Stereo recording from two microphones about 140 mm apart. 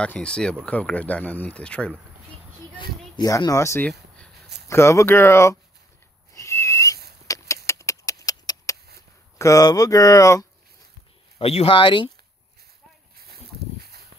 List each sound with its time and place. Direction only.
0.0 s speech: 10° left (ahead or behind)
2.8 s speech: 25° left (ahead or behind)
6.3 s whistling: 20° left (ahead or behind)
7.2 s a sound: 25° left (ahead or behind)
9.4 s speech: 25° left (ahead or behind)
11.3 s speech: 45° left (ahead or behind)